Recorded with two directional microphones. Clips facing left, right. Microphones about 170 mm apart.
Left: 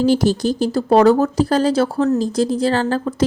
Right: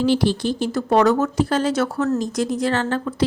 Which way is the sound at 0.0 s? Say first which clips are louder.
Left 3 dB; 40° left (ahead or behind).